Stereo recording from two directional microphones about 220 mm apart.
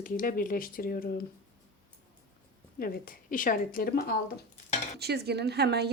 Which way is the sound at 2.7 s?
40° left (ahead or behind).